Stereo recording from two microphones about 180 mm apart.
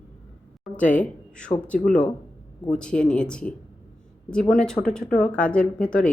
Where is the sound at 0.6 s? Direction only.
5° left (ahead or behind).